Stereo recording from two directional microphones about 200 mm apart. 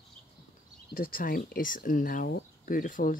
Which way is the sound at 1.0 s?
45° left (ahead or behind).